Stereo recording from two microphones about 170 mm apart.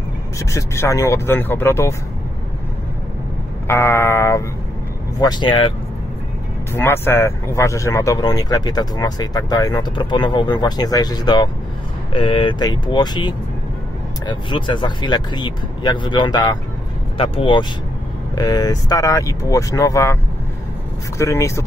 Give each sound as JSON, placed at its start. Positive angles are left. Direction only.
{"t": 0.4, "sound": "speech", "side_deg": 20}
{"t": 3.6, "sound": "speech", "side_deg": 15}
{"t": 5.2, "sound": "speech", "side_deg": 25}
{"t": 6.7, "sound": "speech", "side_deg": 15}
{"t": 21.2, "sound": "speech", "side_deg": 15}